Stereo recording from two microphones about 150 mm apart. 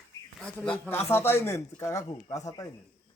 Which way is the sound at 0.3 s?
5° left (ahead or behind).